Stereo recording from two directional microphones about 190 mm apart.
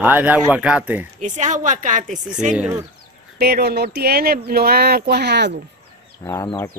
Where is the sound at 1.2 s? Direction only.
40° right (ahead or behind).